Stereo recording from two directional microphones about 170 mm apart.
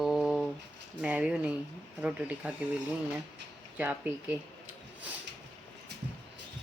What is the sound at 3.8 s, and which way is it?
Speech, 10° right (ahead or behind).